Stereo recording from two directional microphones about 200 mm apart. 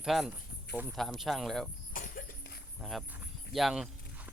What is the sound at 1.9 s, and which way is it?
Cough, 45° left (ahead or behind).